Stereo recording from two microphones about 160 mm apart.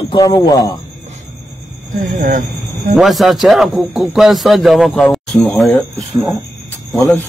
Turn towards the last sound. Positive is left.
turn(degrees=15)  # may be behind; listen again after turning